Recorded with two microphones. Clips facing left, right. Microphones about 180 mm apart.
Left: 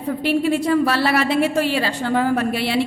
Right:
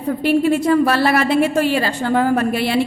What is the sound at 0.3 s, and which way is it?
A woman's voice, 50° right (ahead or behind).